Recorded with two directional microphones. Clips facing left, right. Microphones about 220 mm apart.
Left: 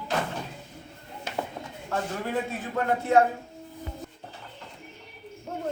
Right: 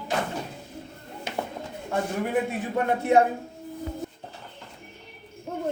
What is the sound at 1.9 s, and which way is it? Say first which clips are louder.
A man's voice: right 3 dB; 15° right (ahead or behind).